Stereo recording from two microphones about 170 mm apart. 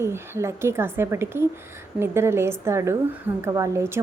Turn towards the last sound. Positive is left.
turn(degrees=-15)  # may be behind; listen again after turning